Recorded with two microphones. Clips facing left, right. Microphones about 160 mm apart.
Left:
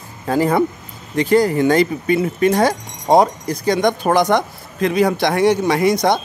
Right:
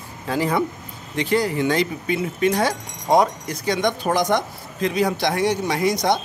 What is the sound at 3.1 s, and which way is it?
Speech, 35° left (ahead or behind).